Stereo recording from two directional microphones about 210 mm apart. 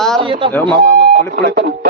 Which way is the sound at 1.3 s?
45° right (ahead or behind).